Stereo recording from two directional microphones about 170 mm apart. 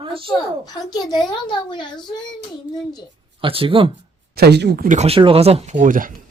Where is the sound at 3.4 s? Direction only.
30° right (ahead or behind).